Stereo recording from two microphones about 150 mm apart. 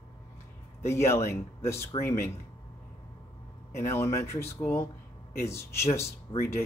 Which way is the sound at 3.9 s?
15° left (ahead or behind).